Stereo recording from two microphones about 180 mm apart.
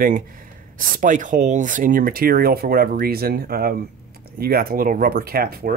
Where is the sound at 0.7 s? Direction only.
45° right (ahead or behind).